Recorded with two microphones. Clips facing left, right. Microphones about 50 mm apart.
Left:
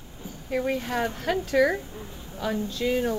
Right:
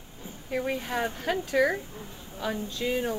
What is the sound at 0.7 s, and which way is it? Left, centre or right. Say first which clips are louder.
A woman's voice: left 2 dB; centre.